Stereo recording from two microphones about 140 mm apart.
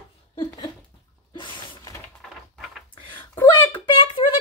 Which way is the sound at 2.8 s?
35° left (ahead or behind).